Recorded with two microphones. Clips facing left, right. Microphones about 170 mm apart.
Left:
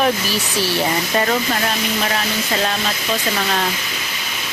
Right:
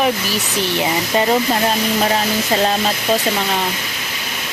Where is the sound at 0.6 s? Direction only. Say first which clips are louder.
Right 1 dB; 20° right (ahead or behind).